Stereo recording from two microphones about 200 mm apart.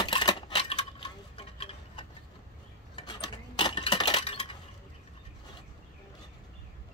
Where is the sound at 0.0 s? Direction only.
20° left (ahead or behind).